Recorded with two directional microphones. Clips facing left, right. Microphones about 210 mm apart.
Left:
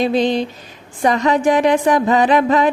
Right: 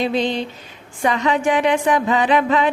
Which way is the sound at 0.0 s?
40° left (ahead or behind).